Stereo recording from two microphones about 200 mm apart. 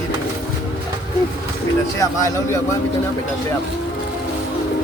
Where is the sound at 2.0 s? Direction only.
15° left (ahead or behind).